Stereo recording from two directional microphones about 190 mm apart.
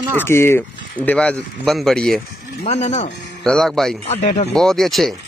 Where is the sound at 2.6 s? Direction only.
35° left (ahead or behind).